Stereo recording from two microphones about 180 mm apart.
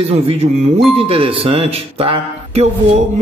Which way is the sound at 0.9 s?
30° right (ahead or behind).